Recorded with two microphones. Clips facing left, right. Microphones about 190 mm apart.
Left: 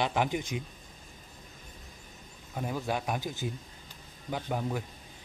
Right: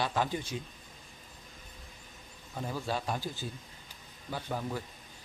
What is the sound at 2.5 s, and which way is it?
A man's voice, 15° left (ahead or behind).